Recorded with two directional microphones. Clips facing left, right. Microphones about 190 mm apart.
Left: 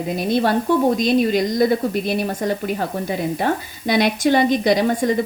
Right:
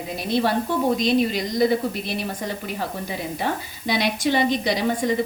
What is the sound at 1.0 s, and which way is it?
A woman's voice, 50° left (ahead or behind).